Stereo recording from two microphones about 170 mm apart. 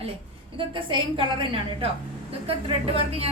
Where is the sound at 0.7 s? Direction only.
30° right (ahead or behind).